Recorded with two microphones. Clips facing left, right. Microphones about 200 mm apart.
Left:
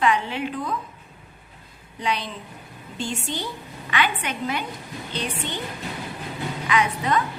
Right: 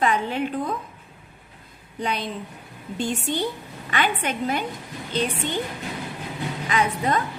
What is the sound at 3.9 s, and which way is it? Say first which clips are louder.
Speech: right 1 dB; 50° right (ahead or behind).